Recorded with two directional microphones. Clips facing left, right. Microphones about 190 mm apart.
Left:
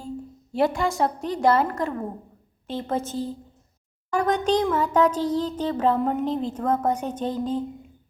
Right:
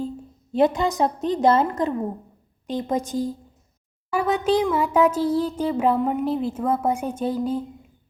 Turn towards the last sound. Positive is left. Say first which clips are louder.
# right 2 dB
turn(degrees=-10)  # may be behind; listen again after turning